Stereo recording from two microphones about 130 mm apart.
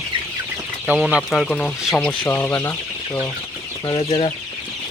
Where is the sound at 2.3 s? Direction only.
20° left (ahead or behind).